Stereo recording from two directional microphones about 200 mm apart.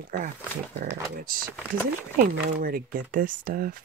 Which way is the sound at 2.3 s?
45° right (ahead or behind).